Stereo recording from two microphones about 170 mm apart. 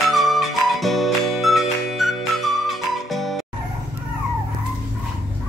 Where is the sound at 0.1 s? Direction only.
Centre (ahead or behind).